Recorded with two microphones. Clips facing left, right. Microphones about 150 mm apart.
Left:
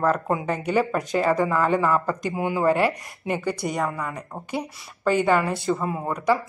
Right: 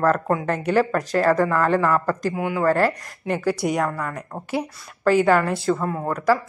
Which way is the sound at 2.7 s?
Centre (ahead or behind).